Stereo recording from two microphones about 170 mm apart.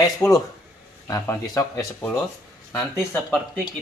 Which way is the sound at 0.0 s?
20° left (ahead or behind).